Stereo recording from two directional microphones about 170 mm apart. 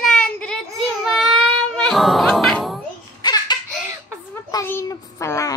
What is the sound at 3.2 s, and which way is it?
Baby laughter, 25° left (ahead or behind).